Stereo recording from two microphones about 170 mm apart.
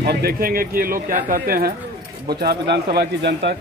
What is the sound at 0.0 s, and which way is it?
Speech, 70° right (ahead or behind).